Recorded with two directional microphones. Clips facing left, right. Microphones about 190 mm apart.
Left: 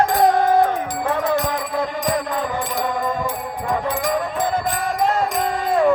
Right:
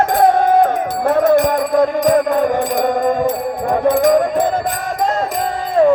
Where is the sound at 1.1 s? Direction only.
50° right (ahead or behind).